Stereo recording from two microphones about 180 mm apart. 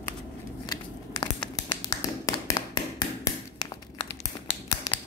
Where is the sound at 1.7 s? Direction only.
20° left (ahead or behind).